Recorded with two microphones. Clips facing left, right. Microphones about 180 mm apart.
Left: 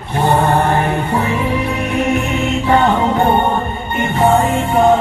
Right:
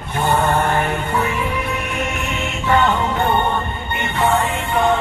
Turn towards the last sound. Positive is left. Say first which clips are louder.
# left 6 dB
turn(degrees=45)  # may be behind; listen again after turning